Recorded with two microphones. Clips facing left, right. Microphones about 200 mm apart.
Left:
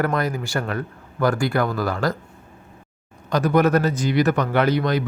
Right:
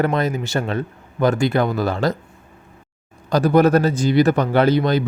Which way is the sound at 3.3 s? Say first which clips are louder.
Right 3 dB; 30° right (ahead or behind).